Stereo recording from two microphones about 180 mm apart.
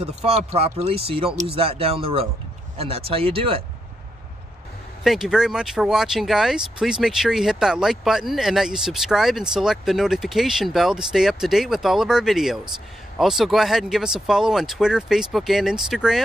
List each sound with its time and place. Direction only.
0.0 s speech: 35° right (ahead or behind)
5.0 s speech: centre (ahead or behind)